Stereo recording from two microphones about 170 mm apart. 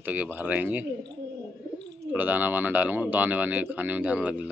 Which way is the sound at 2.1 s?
10° right (ahead or behind).